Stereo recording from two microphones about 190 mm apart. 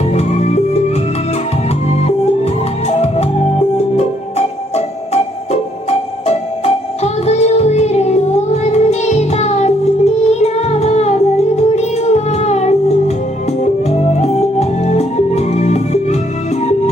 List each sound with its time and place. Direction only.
0.1 s music: 35° left (ahead or behind)
2.0 s music: 35° left (ahead or behind)